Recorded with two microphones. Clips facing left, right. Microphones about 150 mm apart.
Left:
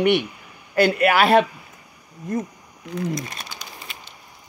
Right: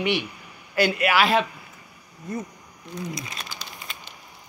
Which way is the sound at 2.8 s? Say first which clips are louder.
Left 6 dB; 90° left.